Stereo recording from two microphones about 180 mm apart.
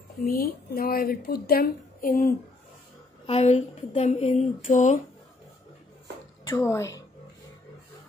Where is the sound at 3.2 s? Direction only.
35° left (ahead or behind).